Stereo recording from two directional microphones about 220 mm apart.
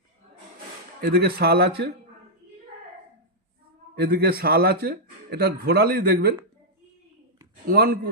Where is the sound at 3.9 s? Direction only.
45° right (ahead or behind).